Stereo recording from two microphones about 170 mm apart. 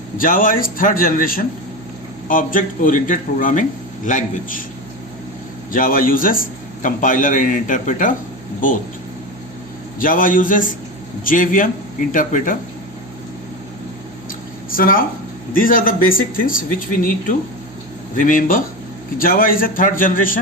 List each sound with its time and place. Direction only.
0.2 s a man's voice: 55° left (ahead or behind)
5.7 s a man's voice: 55° left (ahead or behind)
10.0 s speech: 55° left (ahead or behind)
14.8 s a man's voice: 55° left (ahead or behind)
18.2 s speech: 55° left (ahead or behind)